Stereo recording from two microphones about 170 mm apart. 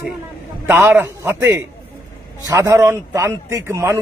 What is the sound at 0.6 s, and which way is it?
A man's voice, 15° right (ahead or behind).